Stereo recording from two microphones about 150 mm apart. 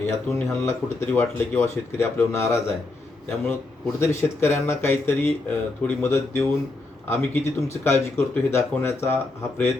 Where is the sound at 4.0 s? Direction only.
15° left (ahead or behind).